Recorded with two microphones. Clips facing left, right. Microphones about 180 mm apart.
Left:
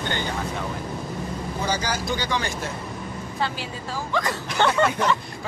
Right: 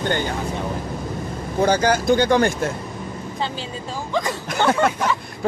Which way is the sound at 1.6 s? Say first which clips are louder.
Right 10 dB; 55° right (ahead or behind).